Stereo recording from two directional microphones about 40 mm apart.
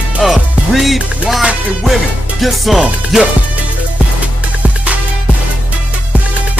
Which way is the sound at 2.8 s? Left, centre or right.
Centre.